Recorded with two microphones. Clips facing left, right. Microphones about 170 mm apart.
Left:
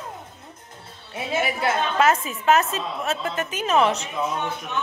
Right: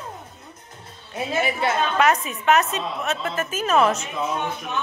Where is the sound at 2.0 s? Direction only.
25° left (ahead or behind).